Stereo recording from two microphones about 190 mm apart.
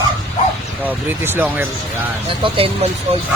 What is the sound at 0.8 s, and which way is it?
Speech, 10° right (ahead or behind).